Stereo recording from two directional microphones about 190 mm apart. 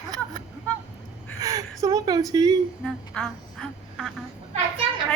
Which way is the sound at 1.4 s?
20° right (ahead or behind).